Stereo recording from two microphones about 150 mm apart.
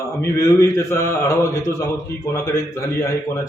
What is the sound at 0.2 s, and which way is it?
A man's voice, 20° left (ahead or behind).